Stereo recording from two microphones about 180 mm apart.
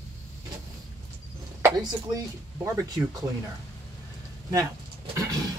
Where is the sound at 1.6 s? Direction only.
20° right (ahead or behind).